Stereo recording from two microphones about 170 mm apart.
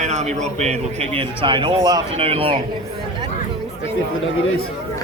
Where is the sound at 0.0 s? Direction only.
40° right (ahead or behind).